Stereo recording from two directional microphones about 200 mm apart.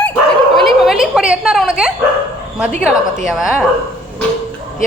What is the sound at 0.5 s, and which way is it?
Dog, centre (ahead or behind).